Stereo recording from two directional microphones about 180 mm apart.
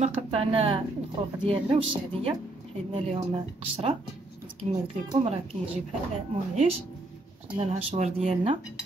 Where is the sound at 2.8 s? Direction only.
35° right (ahead or behind).